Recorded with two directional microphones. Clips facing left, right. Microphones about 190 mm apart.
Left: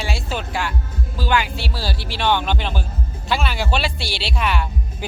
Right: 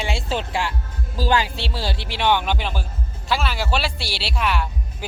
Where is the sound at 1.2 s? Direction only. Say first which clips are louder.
Right 1 dB; 35° right (ahead or behind).